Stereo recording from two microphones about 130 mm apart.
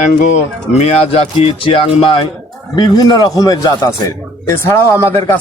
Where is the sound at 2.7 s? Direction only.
30° left (ahead or behind).